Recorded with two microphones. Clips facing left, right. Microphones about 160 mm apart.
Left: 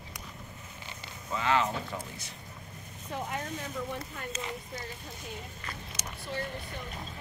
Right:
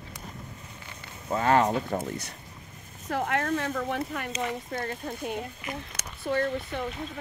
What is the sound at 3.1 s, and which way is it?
Speech, 70° right (ahead or behind).